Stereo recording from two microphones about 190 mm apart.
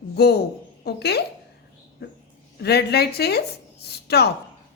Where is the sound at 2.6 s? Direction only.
60° left (ahead or behind).